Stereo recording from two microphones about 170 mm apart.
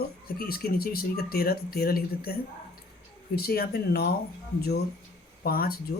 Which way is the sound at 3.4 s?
65° left (ahead or behind).